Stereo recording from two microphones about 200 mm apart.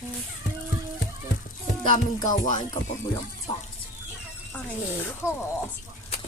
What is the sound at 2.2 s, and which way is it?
Speech, 40° left (ahead or behind).